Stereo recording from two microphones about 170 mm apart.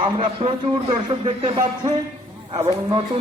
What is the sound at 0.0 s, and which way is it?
A man's voice, 30° right (ahead or behind).